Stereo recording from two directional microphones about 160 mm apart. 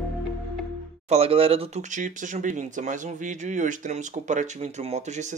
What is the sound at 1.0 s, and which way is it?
Speech, 40° right (ahead or behind).